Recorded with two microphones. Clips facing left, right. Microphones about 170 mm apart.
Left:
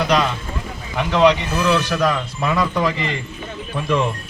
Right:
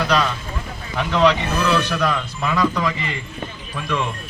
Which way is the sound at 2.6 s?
25° left (ahead or behind).